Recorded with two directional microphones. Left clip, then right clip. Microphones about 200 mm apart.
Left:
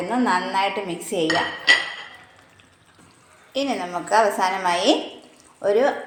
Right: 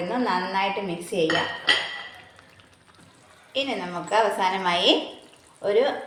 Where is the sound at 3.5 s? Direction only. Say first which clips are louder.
Left 3 dB; 30° left (ahead or behind).